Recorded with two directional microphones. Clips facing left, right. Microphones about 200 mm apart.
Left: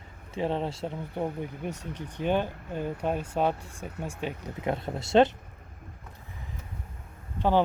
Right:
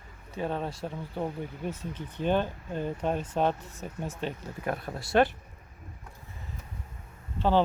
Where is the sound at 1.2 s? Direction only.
15° left (ahead or behind).